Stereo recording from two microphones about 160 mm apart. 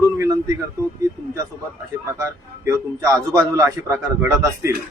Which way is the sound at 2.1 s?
20° right (ahead or behind).